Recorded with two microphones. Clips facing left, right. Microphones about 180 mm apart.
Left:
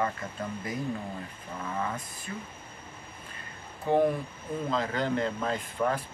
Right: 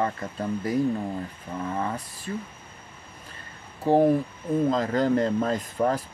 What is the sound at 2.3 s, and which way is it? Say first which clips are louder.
Speech: right 7 dB; 35° right (ahead or behind).